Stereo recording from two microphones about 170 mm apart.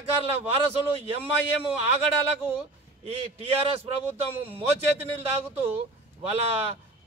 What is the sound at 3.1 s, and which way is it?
Speech, 35° right (ahead or behind).